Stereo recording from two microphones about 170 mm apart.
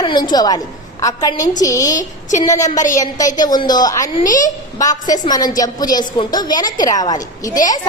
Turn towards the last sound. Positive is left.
turn(degrees=20)  # may be behind; listen again after turning